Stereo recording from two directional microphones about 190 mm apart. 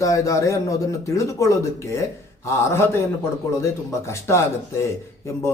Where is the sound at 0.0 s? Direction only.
15° left (ahead or behind).